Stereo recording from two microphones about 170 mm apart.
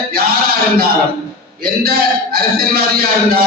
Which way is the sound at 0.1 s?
60° right (ahead or behind).